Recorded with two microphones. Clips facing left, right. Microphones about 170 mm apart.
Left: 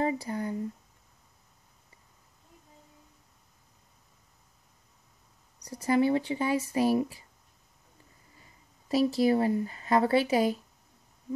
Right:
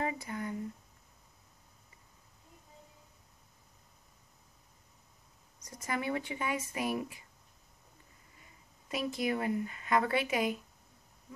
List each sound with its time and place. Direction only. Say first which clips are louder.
0.0 s speech: left 6 dB; 30° left (ahead or behind)
5.7 s speech: left 10 dB; 30° left (ahead or behind)
8.4 s speech: left 1 dB; 35° left (ahead or behind)